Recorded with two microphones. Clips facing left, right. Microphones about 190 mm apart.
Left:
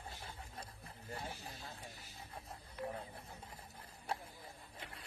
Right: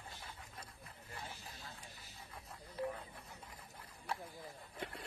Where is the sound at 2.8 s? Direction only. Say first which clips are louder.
Right 3 dB; 30° right (ahead or behind).